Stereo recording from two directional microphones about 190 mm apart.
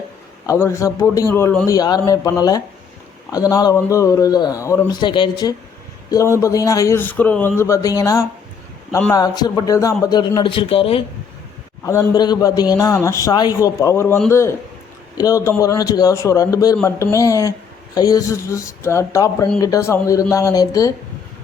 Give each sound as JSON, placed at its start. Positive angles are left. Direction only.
{"t": 0.4, "sound": "a man's voice", "side_deg": 15}